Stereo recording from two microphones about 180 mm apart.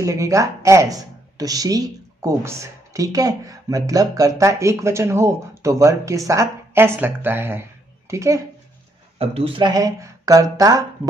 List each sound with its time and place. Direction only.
0.0 s speech: 15° right (ahead or behind)
9.2 s speech: 30° right (ahead or behind)